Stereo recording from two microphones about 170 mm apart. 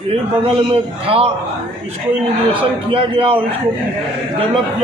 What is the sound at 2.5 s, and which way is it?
Speech, 30° right (ahead or behind).